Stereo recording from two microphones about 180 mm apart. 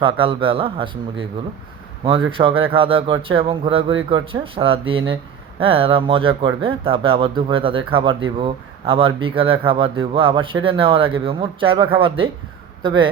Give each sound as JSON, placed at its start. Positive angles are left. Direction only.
{"t": 0.0, "sound": "a man's voice", "side_deg": -30}
{"t": 2.4, "sound": "a man's voice", "side_deg": -30}